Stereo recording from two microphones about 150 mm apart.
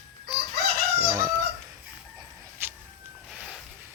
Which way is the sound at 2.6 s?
15° right (ahead or behind).